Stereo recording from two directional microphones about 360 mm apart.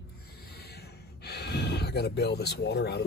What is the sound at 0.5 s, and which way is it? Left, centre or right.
Gasp, left.